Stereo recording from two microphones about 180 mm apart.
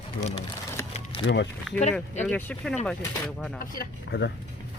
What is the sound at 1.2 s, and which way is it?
Speech, 80° left.